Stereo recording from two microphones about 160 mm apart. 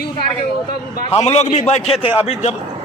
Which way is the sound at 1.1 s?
40° left (ahead or behind).